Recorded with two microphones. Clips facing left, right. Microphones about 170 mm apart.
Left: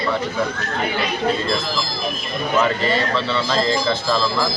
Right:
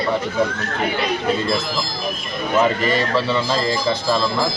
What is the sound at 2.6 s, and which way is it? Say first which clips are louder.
Speech: right 2 dB; 15° right (ahead or behind).